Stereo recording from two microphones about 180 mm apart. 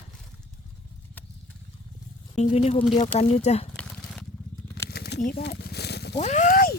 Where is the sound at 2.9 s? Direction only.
40° left (ahead or behind).